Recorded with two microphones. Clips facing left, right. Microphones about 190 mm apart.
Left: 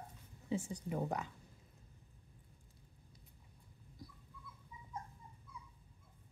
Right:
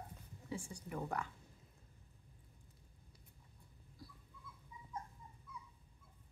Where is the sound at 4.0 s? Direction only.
20° left (ahead or behind).